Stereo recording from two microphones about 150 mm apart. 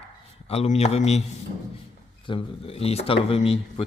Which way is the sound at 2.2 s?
35° left (ahead or behind).